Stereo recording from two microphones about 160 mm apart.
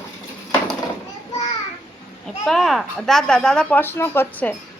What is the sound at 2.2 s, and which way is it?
A woman's voice, centre (ahead or behind).